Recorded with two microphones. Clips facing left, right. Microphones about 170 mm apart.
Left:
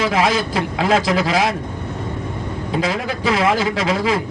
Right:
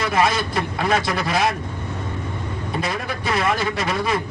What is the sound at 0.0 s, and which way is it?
Speech, 90° left.